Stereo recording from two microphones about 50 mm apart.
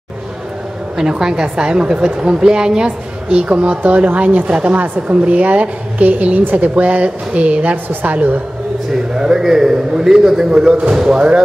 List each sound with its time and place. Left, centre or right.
1.4 s a man's voice: centre
3.3 s a woman's voice: right
4.5 s a woman's voice: right
4.8 s a woman's voice: right
7.7 s a woman's voice: right
9.1 s a man's voice: centre